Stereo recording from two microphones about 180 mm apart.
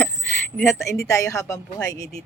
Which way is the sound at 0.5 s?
15° left (ahead or behind).